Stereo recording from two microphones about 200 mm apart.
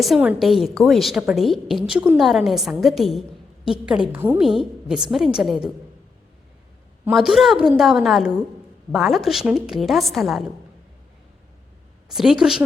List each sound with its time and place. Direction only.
0.0 s a woman's voice: 5° right (ahead or behind)
7.0 s a woman's voice: 5° right (ahead or behind)
12.0 s a woman's voice: centre (ahead or behind)